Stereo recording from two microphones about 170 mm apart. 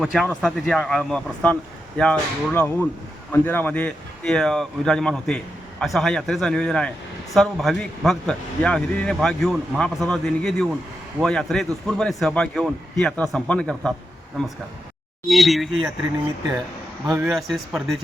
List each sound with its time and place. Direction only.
0.0 s a man's voice: centre (ahead or behind)
17.1 s a man's voice: 5° right (ahead or behind)